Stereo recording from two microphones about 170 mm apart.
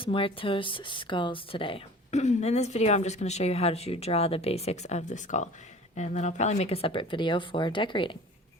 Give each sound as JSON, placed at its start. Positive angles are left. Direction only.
{"t": 0.0, "sound": "speech", "side_deg": 30}